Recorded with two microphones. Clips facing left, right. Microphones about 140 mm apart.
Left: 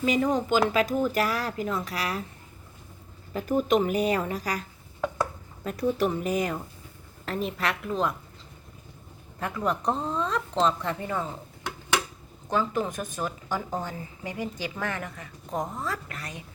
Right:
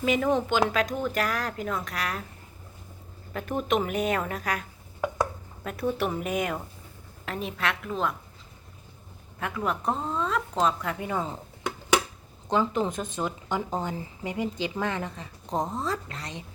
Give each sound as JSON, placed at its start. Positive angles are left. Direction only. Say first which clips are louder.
{"t": 0.0, "sound": "speech", "louder": "even", "side_deg": 0}
{"t": 3.3, "sound": "a woman's voice", "louder": "left 3 dB", "side_deg": 0}
{"t": 9.4, "sound": "speech", "louder": "left 1 dB", "side_deg": -5}
{"t": 11.0, "sound": "speech", "louder": "right 3 dB", "side_deg": -15}
{"t": 12.5, "sound": "speech", "louder": "right 2 dB", "side_deg": -20}
{"t": 15.4, "sound": "speech", "louder": "right 2 dB", "side_deg": -30}